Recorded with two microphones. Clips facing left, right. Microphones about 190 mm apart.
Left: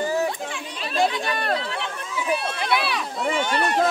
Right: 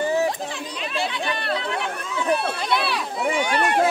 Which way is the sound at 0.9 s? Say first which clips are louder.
Left 5 dB; 40° left (ahead or behind).